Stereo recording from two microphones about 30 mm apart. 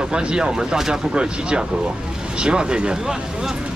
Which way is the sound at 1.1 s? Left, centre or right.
Right.